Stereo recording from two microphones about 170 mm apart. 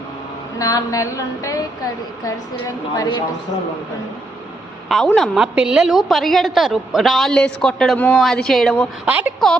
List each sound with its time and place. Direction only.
0.6 s a sound: 20° left (ahead or behind)
4.9 s a woman's voice: centre (ahead or behind)
9.0 s a woman's voice: 10° right (ahead or behind)